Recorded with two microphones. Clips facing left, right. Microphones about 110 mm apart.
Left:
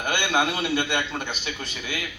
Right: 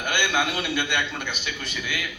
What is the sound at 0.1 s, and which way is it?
A man's voice, 35° left (ahead or behind).